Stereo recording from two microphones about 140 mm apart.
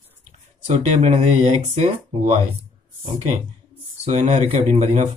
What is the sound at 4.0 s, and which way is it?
Speech, 55° right (ahead or behind).